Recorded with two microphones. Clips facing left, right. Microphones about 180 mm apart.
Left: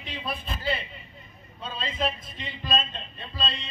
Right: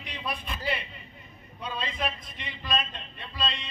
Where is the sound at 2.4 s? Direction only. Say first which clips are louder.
Left 2 dB; 25° left (ahead or behind).